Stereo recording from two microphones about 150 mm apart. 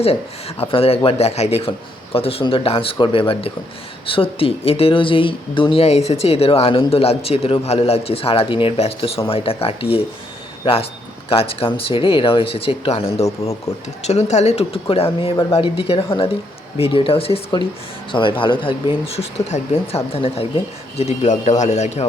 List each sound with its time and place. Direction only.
0.0 s speech: 45° left (ahead or behind)
11.3 s speech: 35° left (ahead or behind)
13.2 s speech: 20° left (ahead or behind)
14.0 s speech: 50° left (ahead or behind)